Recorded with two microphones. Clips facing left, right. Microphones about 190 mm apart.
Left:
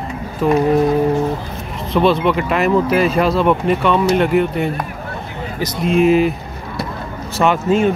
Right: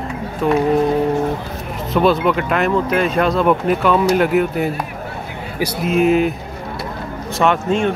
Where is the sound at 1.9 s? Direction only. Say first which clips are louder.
Left 1 dB; centre (ahead or behind).